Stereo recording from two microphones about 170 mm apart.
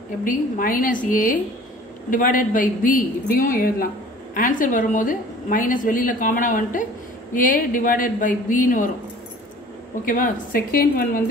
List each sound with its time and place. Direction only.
0.2 s a woman's voice: 55° left (ahead or behind)
10.0 s a woman's voice: 55° left (ahead or behind)